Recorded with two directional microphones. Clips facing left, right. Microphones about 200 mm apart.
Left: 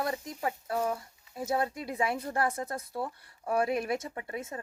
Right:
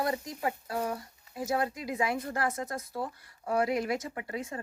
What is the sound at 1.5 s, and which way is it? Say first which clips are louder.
A woman's voice: even; 30° left (ahead or behind).